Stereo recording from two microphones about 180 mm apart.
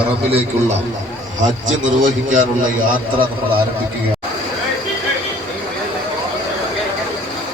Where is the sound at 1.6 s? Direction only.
45° right (ahead or behind).